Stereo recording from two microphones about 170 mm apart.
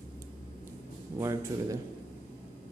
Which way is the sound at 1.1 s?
15° right (ahead or behind).